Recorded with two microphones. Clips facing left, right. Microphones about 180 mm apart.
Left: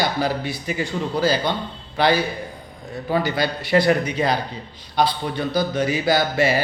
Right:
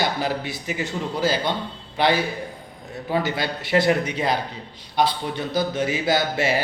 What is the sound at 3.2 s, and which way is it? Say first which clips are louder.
Speech: left 3 dB; 20° right (ahead or behind).